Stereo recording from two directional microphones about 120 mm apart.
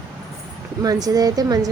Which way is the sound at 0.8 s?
30° right (ahead or behind).